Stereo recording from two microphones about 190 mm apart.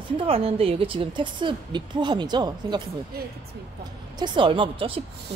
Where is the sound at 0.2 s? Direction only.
30° right (ahead or behind).